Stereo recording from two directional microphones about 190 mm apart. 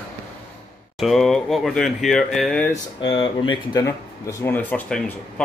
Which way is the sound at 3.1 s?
25° left (ahead or behind).